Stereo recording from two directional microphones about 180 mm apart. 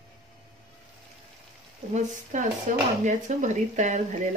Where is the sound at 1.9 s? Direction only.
45° right (ahead or behind).